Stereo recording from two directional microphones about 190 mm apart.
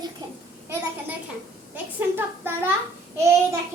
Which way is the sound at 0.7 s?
10° right (ahead or behind).